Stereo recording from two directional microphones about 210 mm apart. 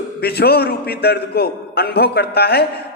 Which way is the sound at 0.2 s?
50° left (ahead or behind).